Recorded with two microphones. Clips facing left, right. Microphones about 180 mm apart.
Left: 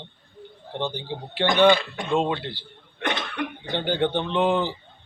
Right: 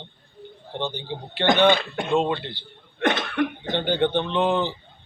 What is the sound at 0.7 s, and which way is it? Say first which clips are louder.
Speech: even; 10° left (ahead or behind).